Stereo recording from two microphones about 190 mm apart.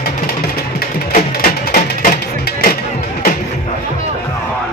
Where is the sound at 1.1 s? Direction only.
50° left (ahead or behind).